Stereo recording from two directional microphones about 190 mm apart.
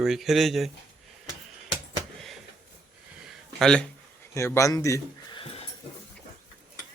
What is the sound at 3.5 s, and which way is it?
Speech, 5° left (ahead or behind).